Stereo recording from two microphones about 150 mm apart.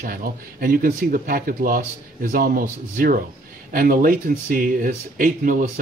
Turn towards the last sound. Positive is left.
turn(degrees=-65)  # may be behind; listen again after turning